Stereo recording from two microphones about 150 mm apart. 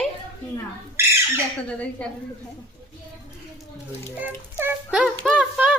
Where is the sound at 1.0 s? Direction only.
15° right (ahead or behind).